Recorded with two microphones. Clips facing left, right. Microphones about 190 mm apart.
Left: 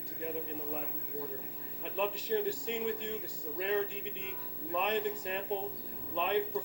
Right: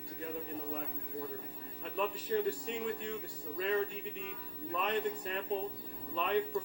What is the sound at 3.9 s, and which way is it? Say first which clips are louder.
Speech: even; 70° left (ahead or behind).